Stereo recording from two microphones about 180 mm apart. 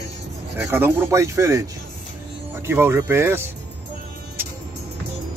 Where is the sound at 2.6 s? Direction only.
15° right (ahead or behind).